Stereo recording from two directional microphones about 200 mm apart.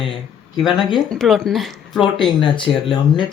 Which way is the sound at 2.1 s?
25° left (ahead or behind).